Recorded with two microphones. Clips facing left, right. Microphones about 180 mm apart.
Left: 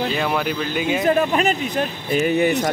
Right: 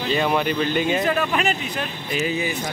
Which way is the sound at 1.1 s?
35° left (ahead or behind).